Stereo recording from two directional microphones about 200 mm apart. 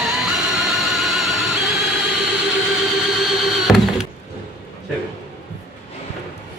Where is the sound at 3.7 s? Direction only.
Centre (ahead or behind).